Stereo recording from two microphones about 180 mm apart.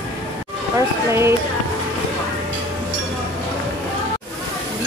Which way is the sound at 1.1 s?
15° right (ahead or behind).